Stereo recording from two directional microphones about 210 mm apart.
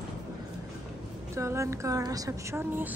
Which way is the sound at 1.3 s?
15° right (ahead or behind).